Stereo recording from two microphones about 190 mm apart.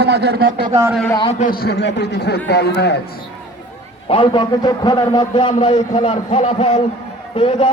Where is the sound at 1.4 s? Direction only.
50° left (ahead or behind).